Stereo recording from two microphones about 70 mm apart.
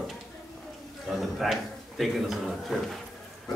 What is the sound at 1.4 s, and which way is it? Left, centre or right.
A man's voice, centre.